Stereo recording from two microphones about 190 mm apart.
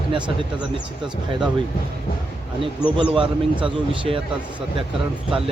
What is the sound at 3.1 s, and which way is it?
Speech, 25° right (ahead or behind).